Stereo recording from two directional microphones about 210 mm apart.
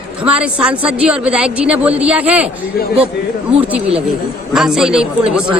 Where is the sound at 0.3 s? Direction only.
5° right (ahead or behind).